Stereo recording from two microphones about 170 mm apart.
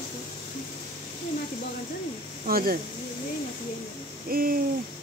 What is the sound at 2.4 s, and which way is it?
Speech, 60° right (ahead or behind).